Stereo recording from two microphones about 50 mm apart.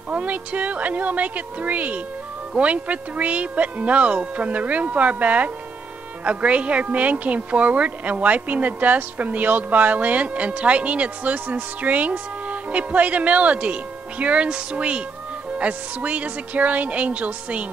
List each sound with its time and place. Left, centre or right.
0.1 s a woman's voice: right